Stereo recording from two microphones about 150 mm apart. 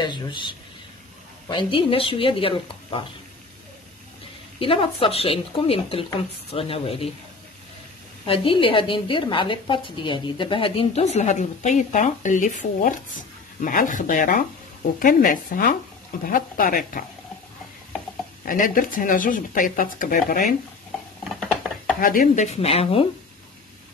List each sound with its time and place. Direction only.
0.0 s speech: 30° left (ahead or behind)
1.5 s speech: 35° left (ahead or behind)
4.6 s speech: 35° left (ahead or behind)
8.3 s a woman's voice: 35° left (ahead or behind); by 17.0 s 65° left (ahead or behind)
18.5 s speech: 65° left (ahead or behind)
22.0 s a woman's voice: 65° left (ahead or behind); by 23.0 s 40° left (ahead or behind)